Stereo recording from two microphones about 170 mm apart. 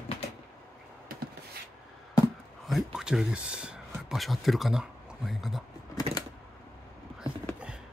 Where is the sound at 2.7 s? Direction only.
5° right (ahead or behind).